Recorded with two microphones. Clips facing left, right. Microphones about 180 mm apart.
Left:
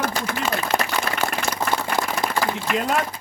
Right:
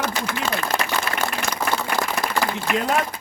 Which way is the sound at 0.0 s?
50° left (ahead or behind).